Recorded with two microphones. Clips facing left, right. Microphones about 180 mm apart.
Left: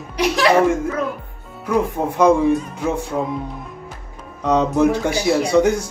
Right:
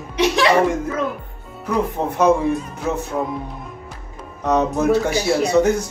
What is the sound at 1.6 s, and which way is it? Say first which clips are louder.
Speech: left 2 dB; 10° left (ahead or behind).